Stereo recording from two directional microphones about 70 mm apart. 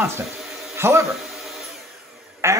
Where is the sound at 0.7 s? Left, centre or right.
Right.